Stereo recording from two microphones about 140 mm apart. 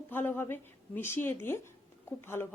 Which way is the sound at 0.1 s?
15° left (ahead or behind).